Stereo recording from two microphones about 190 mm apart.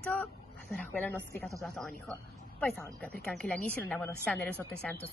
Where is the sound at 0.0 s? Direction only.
5° left (ahead or behind).